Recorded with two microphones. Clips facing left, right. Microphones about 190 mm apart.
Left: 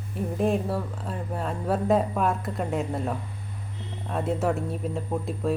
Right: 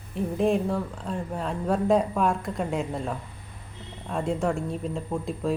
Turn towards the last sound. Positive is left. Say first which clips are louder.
# left 1 dB
turn(degrees=0)  # may be behind; listen again after turning